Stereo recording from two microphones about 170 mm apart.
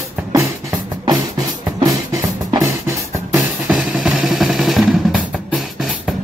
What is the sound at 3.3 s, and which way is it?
Drum, 5° right (ahead or behind).